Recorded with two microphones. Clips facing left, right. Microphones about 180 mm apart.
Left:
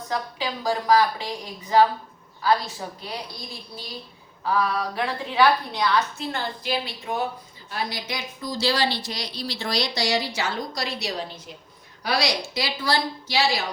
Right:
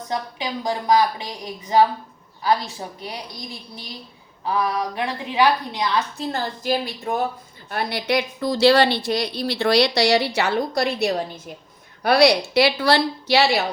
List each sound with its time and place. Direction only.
0.1 s a woman's voice: 20° right (ahead or behind)
4.4 s a woman's voice: 20° right (ahead or behind)
6.1 s a woman's voice: 40° right (ahead or behind)
7.7 s a woman's voice: 60° right (ahead or behind)